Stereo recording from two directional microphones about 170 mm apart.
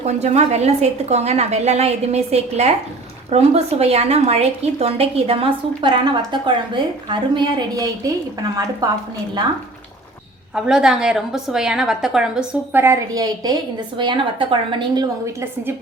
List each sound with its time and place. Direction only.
0.0 s a woman's voice: 40° right (ahead or behind); by 9.0 s 20° right (ahead or behind)
10.5 s a woman's voice: 5° right (ahead or behind); by 15.4 s 25° right (ahead or behind)